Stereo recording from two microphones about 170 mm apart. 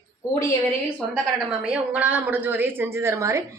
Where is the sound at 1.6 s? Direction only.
5° right (ahead or behind).